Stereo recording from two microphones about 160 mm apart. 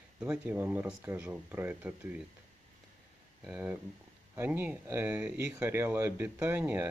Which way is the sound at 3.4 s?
10° right (ahead or behind).